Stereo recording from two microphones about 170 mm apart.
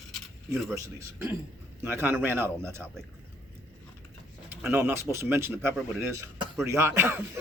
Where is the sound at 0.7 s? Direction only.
15° right (ahead or behind).